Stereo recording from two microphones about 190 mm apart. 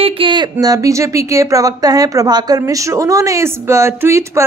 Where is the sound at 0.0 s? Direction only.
25° right (ahead or behind).